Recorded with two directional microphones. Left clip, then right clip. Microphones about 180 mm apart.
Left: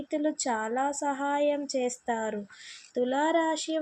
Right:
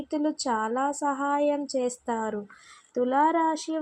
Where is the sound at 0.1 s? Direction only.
15° right (ahead or behind).